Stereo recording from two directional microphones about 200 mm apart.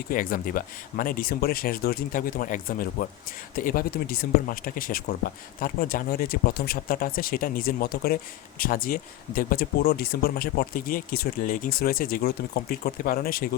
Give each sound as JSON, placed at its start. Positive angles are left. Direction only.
{"t": 0.1, "sound": "speech", "side_deg": 45}